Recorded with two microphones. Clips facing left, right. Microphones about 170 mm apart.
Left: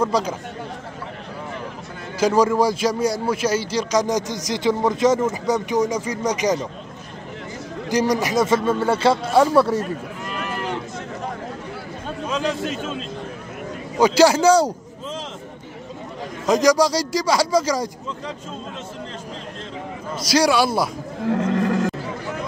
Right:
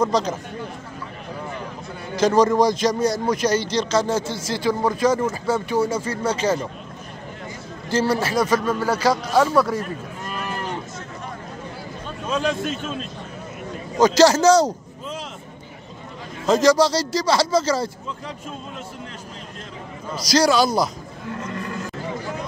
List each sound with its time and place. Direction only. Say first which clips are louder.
0.0 s a man's voice: even; 10° left (ahead or behind)
2.1 s a man's voice: right 1 dB; 10° left (ahead or behind)
7.9 s a man's voice: left 1 dB; 15° left (ahead or behind)
12.3 s a man's voice: right 1 dB; 20° left (ahead or behind)
13.9 s a man's voice: even; 10° left (ahead or behind)
16.4 s a man's voice: even; 15° left (ahead or behind)
20.2 s a man's voice: even; 10° left (ahead or behind)
21.2 s speech: left 10 dB; 75° left (ahead or behind)